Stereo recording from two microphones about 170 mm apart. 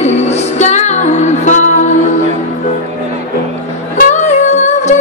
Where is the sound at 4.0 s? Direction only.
45° left (ahead or behind).